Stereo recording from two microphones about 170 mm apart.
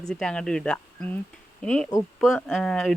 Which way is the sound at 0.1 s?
5° left (ahead or behind).